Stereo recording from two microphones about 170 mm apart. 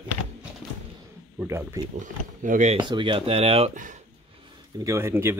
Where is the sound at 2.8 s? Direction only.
30° right (ahead or behind); by 4.0 s 45° right (ahead or behind).